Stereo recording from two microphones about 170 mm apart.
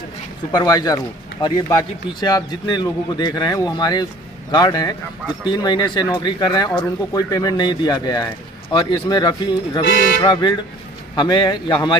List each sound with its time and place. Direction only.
0.5 s speech: 25° left (ahead or behind)